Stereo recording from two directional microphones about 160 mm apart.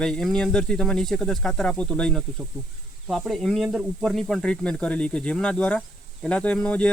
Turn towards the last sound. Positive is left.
turn(degrees=5)  # may be behind; listen again after turning